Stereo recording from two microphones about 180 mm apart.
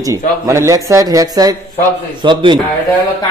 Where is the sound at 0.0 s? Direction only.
15° right (ahead or behind).